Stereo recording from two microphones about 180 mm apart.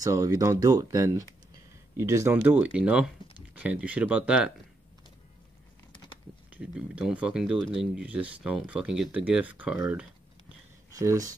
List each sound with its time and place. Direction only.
0.0 s speech: 20° right (ahead or behind)
6.5 s speech: 5° right (ahead or behind)
10.9 s speech: 20° right (ahead or behind)